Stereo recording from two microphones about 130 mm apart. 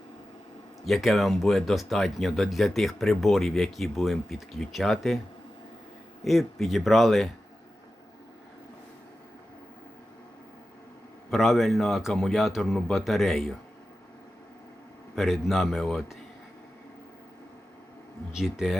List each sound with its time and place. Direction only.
0.9 s speech: centre (ahead or behind)
6.2 s speech: centre (ahead or behind)
11.3 s speech: centre (ahead or behind)
15.1 s speech: centre (ahead or behind)
18.3 s speech: 5° right (ahead or behind)